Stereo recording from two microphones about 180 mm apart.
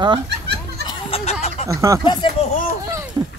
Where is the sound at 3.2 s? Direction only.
20° right (ahead or behind).